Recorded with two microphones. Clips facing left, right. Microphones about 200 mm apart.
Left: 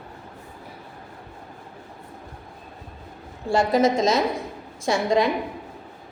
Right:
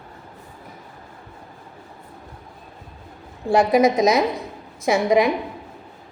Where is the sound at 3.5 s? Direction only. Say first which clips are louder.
Right 3 dB; 20° right (ahead or behind).